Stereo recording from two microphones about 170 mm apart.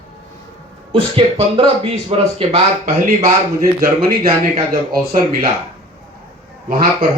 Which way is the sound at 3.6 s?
55° right (ahead or behind).